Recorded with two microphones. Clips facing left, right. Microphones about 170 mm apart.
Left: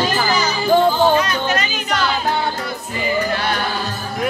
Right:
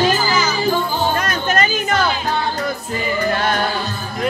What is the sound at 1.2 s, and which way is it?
Music, 50° right (ahead or behind).